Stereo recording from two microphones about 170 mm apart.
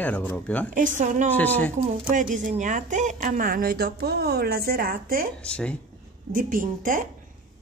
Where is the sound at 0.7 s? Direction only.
50° right (ahead or behind).